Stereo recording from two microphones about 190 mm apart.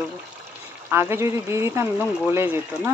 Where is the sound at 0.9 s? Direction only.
10° right (ahead or behind).